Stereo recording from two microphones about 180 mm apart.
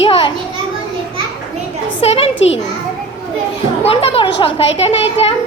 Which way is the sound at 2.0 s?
35° left (ahead or behind).